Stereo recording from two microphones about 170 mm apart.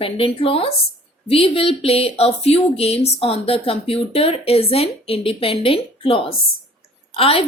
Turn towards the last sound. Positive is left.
turn(degrees=35)  # may be behind; listen again after turning